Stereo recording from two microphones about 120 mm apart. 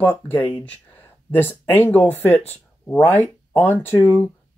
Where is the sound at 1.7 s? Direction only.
20° left (ahead or behind).